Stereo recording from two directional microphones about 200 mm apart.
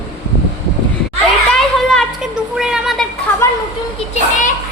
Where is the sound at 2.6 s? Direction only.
Centre (ahead or behind).